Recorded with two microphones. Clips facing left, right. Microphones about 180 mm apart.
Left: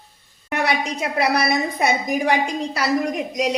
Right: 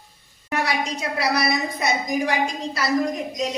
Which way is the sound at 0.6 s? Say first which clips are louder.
Left 3 dB; 60° left (ahead or behind).